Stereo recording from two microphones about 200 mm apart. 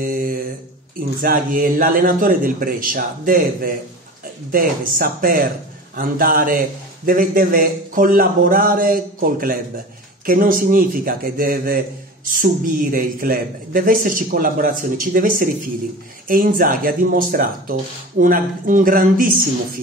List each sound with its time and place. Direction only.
0.0 s mantra: 45° right (ahead or behind)
1.2 s speech: 45° right (ahead or behind)